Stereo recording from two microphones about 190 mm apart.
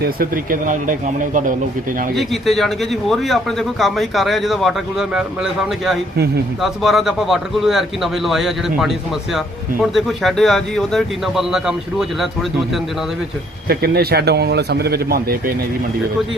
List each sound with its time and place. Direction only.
0.0 s speech: 50° right (ahead or behind)
2.1 s speech: centre (ahead or behind)
13.7 s speech: 55° right (ahead or behind)